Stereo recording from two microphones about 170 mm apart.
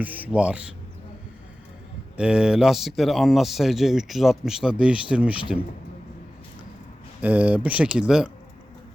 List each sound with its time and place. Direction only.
0.0 s speech: 10° right (ahead or behind)
2.1 s speech: 5° right (ahead or behind)
7.2 s speech: 10° right (ahead or behind)